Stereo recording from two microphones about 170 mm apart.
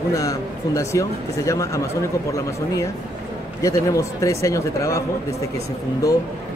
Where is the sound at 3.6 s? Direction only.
20° left (ahead or behind).